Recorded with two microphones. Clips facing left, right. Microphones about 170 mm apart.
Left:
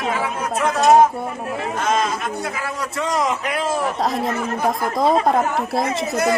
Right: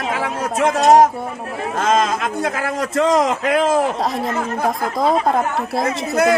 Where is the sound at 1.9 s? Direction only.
90° right.